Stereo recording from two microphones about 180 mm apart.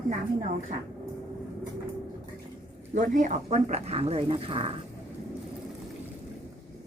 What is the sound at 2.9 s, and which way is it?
Speech, 45° right (ahead or behind).